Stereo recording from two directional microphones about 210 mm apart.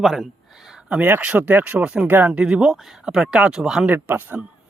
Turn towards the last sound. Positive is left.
turn(degrees=-10)  # may be behind; listen again after turning